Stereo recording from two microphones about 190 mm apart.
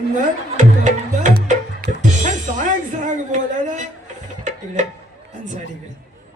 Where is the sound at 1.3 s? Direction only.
50° right (ahead or behind).